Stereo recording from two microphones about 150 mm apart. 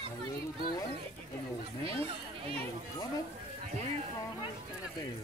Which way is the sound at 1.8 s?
40° right (ahead or behind).